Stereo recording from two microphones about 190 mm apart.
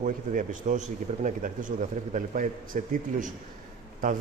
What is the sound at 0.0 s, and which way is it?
Speech, 45° right (ahead or behind).